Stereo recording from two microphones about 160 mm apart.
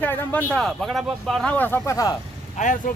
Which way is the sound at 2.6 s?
50° left (ahead or behind).